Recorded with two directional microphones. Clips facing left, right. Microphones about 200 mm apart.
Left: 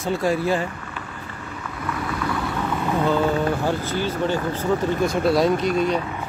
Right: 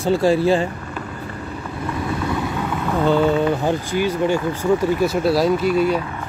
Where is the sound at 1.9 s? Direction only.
25° right (ahead or behind).